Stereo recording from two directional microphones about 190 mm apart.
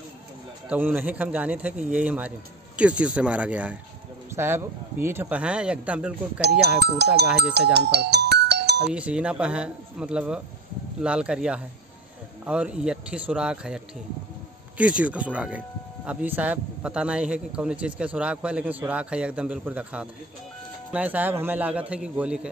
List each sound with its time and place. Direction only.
0.7 s a man's voice: 10° right (ahead or behind)
6.6 s speech: 60° right (ahead or behind)
7.3 s music: 60° right (ahead or behind)
8.9 s a man's voice: 5° right (ahead or behind)